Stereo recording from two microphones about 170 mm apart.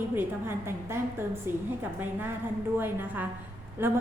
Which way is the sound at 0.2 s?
15° right (ahead or behind).